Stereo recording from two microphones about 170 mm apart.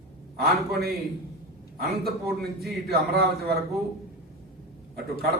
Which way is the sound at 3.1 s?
70° right (ahead or behind).